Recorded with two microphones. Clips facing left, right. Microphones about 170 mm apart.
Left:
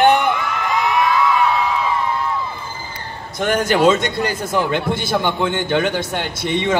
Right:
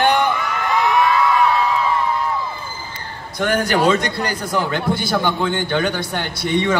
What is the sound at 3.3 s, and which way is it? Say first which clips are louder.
A man's voice: left 1 dB; 25° left (ahead or behind).